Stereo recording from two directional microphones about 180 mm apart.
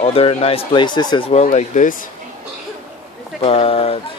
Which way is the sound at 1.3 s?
40° left (ahead or behind).